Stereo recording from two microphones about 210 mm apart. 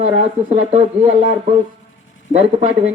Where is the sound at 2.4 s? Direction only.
30° right (ahead or behind).